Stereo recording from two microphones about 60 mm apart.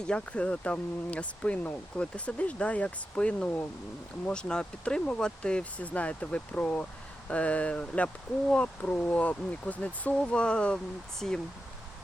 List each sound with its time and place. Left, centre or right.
0.0 s speech: centre
8.9 s speech: left
11.2 s speech: centre